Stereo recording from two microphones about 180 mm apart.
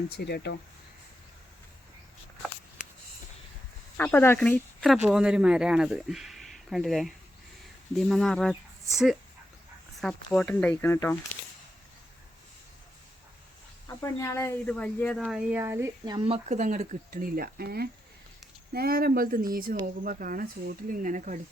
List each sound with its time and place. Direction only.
0.2 s speech: 65° left (ahead or behind)
3.9 s speech: 10° left (ahead or behind)
10.3 s speech: 10° left (ahead or behind)
13.8 s speech: 15° left (ahead or behind)
15.2 s speech: 5° right (ahead or behind)
16.1 s speech: 30° right (ahead or behind)